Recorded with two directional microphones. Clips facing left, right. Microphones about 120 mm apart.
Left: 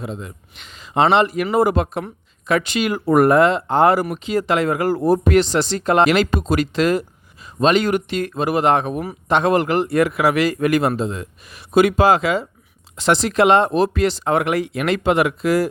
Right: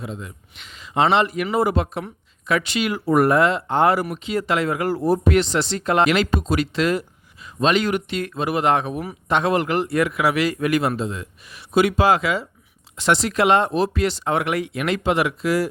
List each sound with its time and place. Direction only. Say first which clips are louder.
0.1 s speech: left 3 dB; 35° left (ahead or behind)
6.3 s speech: left 2 dB; 50° left (ahead or behind)
13.7 s speech: left 3 dB; 50° left (ahead or behind)